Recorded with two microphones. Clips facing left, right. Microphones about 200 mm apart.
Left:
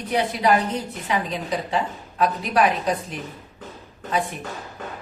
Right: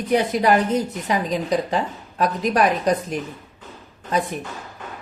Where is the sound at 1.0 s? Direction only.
40° right (ahead or behind).